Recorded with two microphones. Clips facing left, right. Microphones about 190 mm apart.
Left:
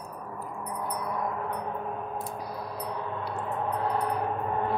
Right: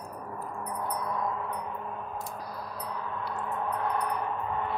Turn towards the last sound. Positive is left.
turn(degrees=35)  # may be behind; listen again after turning